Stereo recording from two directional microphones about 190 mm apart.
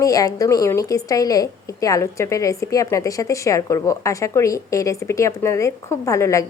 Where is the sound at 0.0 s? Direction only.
20° left (ahead or behind).